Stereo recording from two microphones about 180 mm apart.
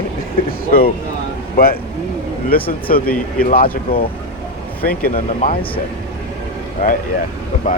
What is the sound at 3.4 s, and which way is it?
Speech, 55° left (ahead or behind).